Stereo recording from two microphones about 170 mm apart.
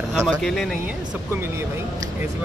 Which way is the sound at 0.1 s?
5° left (ahead or behind).